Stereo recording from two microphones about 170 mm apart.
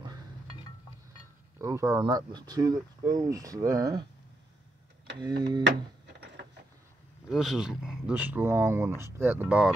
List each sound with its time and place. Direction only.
1.6 s speech: 20° right (ahead or behind)
5.2 s speech: 25° right (ahead or behind)
7.2 s speech: centre (ahead or behind)